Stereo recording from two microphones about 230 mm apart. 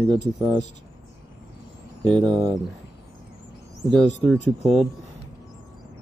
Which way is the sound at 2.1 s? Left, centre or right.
Centre.